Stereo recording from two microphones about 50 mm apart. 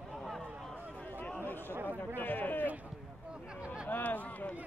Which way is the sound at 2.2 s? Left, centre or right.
Left.